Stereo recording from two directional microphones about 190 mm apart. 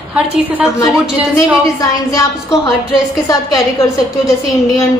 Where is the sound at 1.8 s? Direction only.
15° left (ahead or behind).